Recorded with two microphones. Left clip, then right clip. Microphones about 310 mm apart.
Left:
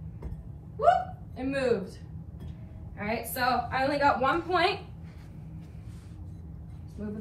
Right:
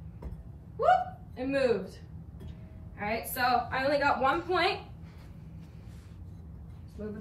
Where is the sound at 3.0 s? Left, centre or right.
Centre.